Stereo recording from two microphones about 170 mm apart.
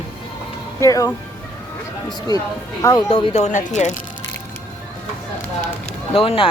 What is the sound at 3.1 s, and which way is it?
Speech, 30° left (ahead or behind).